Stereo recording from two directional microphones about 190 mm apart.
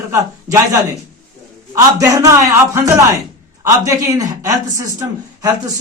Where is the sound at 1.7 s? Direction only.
20° right (ahead or behind).